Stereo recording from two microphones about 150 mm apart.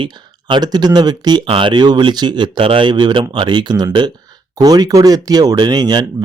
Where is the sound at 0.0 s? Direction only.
30° right (ahead or behind).